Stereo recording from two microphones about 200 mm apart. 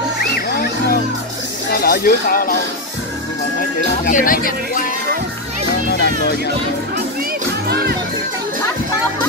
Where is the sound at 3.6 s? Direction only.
40° left (ahead or behind).